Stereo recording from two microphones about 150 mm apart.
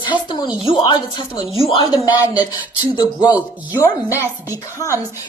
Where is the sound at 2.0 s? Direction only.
25° left (ahead or behind).